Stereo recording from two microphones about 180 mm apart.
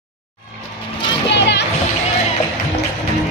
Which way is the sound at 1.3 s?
75° left (ahead or behind).